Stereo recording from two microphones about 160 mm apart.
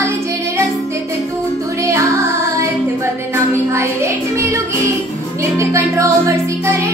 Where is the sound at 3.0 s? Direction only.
15° right (ahead or behind).